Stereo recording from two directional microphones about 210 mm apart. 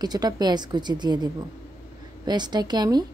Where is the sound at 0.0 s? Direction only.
20° right (ahead or behind).